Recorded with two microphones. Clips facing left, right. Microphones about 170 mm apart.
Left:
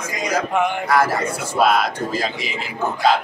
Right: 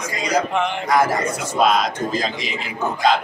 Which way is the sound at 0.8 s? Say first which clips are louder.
Right 2 dB; 15° right (ahead or behind).